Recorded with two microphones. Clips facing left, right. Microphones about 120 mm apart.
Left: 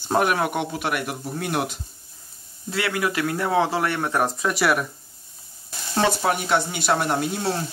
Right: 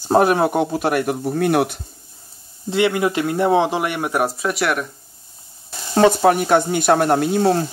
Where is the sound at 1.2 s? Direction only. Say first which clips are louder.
Right 9 dB; 55° right (ahead or behind).